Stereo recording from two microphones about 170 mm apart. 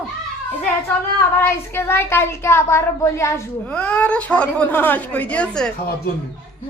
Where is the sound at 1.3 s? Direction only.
15° left (ahead or behind).